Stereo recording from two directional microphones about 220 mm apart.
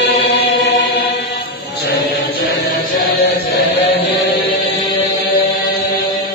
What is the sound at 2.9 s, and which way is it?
Chant, 50° left (ahead or behind).